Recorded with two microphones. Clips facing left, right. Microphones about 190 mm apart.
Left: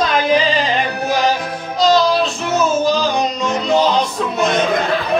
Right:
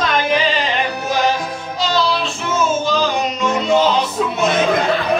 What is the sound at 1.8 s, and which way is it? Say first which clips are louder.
Child singing: left 5 dB; 40° left (ahead or behind).